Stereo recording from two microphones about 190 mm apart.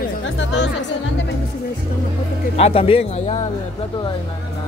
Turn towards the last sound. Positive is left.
turn(degrees=30)  # may be behind; listen again after turning